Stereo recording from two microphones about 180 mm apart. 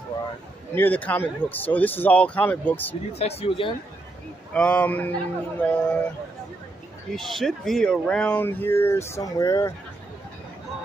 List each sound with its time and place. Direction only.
0.7 s speech: 10° left (ahead or behind)
3.1 s speech: 35° left (ahead or behind)
4.6 s speech: 5° left (ahead or behind)
7.2 s speech: centre (ahead or behind)